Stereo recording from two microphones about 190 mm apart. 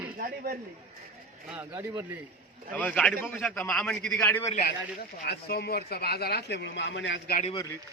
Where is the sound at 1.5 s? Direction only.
10° right (ahead or behind).